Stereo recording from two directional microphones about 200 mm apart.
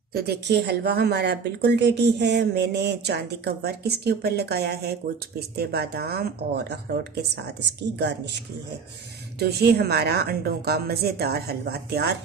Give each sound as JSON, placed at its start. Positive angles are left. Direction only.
{"t": 0.1, "sound": "a woman's voice", "side_deg": -55}
{"t": 9.4, "sound": "a woman's voice", "side_deg": -55}